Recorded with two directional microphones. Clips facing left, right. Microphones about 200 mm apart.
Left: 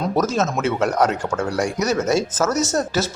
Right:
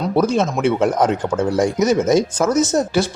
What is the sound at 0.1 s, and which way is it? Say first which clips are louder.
Speech: right 6 dB; 15° right (ahead or behind).